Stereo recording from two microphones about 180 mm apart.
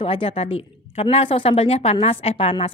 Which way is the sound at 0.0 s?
30° left (ahead or behind).